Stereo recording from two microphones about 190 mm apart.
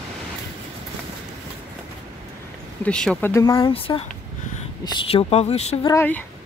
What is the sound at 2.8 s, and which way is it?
Speech, 5° left (ahead or behind).